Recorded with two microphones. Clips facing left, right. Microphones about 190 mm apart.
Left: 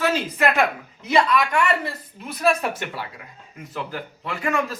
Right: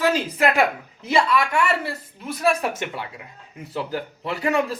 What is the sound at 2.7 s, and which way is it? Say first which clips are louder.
A man's voice: right 1 dB; 20° right (ahead or behind).